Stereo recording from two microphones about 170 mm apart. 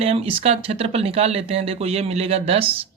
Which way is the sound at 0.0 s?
35° right (ahead or behind).